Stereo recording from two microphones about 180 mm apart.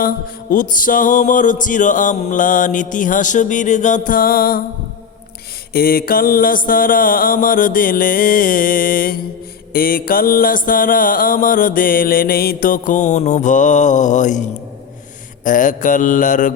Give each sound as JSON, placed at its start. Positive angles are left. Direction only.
{"t": 0.5, "sound": "mantra", "side_deg": 50}
{"t": 5.7, "sound": "mantra", "side_deg": 55}
{"t": 15.4, "sound": "mantra", "side_deg": 45}